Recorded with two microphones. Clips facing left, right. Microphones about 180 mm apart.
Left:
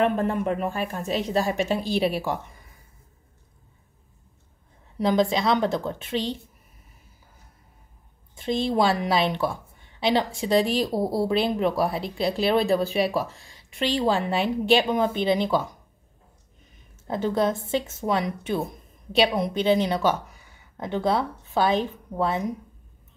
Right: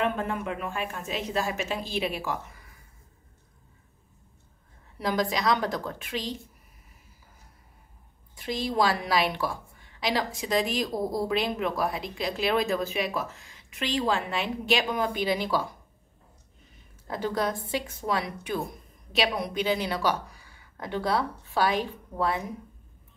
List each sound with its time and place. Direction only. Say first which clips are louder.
0.0 s speech: left 6 dB; 35° left (ahead or behind)
4.9 s a woman's voice: left 6 dB; 25° left (ahead or behind)
8.4 s a woman's voice: left 4 dB; 25° left (ahead or behind)
17.1 s a woman's voice: left 5 dB; 25° left (ahead or behind)